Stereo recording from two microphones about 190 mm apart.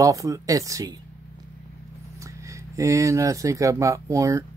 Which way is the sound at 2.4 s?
15° right (ahead or behind).